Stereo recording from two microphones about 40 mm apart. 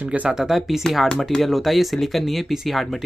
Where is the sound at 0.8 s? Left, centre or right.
Centre.